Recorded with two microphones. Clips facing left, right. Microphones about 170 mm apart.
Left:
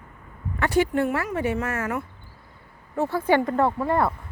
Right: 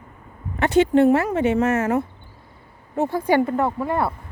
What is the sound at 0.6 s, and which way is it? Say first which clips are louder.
Speech: right 6 dB; 20° right (ahead or behind).